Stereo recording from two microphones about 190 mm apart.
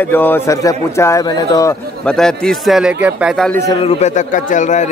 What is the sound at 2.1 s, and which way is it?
Speech, 5° left (ahead or behind).